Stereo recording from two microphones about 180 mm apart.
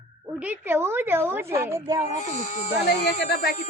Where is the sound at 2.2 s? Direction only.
40° left (ahead or behind).